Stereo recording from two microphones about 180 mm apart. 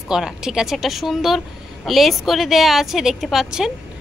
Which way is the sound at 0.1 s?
5° right (ahead or behind).